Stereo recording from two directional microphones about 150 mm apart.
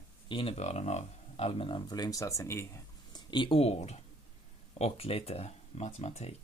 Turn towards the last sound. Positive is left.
turn(degrees=45)  # may be behind; listen again after turning